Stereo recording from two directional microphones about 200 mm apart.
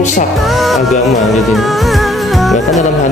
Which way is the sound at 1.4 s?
Centre (ahead or behind).